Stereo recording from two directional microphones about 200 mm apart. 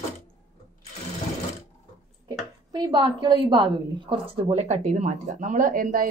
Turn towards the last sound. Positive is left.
turn(degrees=-45)  # may be behind; listen again after turning